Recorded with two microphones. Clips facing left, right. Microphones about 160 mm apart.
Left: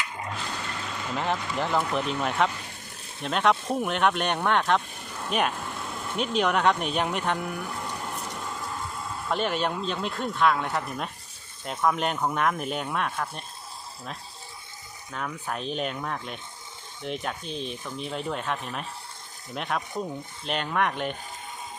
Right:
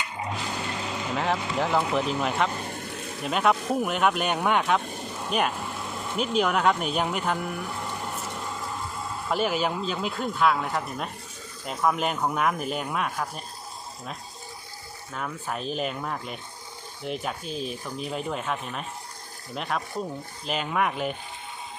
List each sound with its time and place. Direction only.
1.1 s speech: centre (ahead or behind)
2.5 s vehicle: 55° right (ahead or behind)
3.2 s speech: 5° right (ahead or behind)
9.3 s speech: 5° right (ahead or behind)
15.1 s speech: centre (ahead or behind)